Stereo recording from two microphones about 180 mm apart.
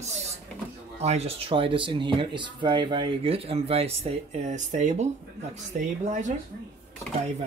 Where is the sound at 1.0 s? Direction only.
35° right (ahead or behind).